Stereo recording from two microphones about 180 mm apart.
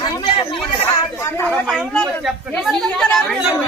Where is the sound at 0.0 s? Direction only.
30° left (ahead or behind).